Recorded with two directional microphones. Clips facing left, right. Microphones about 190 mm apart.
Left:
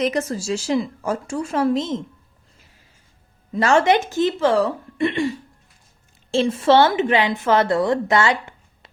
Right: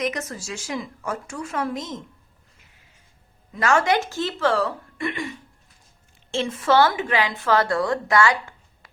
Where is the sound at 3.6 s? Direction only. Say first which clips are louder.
Left 4 dB; 25° left (ahead or behind).